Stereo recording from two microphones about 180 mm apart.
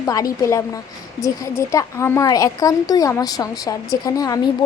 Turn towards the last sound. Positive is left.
turn(degrees=20)  # may be behind; listen again after turning